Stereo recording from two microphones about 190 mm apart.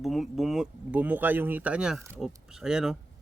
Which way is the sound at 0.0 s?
Centre (ahead or behind).